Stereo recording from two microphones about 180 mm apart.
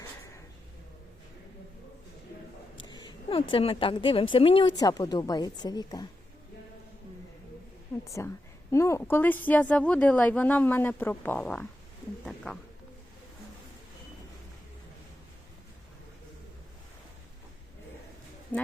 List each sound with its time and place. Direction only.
2.8 s a sound: 25° left (ahead or behind)
3.5 s a woman's voice: 30° left (ahead or behind)
7.9 s a woman's voice: 5° left (ahead or behind)
8.7 s a woman's voice: 15° left (ahead or behind)
18.5 s speech: 10° left (ahead or behind)